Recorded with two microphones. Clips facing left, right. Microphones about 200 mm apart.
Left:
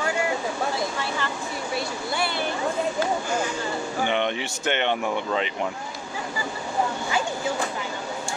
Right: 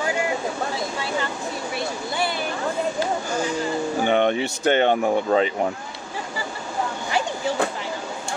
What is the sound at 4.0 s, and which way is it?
Speech, 45° right (ahead or behind).